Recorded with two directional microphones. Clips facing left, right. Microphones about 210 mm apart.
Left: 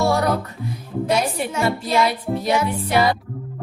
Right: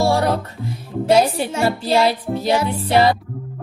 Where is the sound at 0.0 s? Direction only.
30° right (ahead or behind).